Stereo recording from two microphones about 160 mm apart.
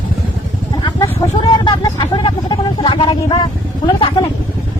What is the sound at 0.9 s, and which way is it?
Vehicle, 25° left (ahead or behind).